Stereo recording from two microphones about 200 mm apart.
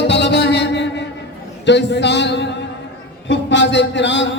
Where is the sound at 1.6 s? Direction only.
60° left (ahead or behind).